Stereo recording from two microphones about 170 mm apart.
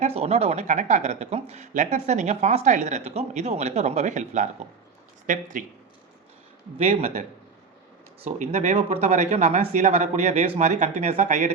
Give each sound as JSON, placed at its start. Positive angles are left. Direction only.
{"t": 0.0, "sound": "speech", "side_deg": -40}
{"t": 6.8, "sound": "speech", "side_deg": -40}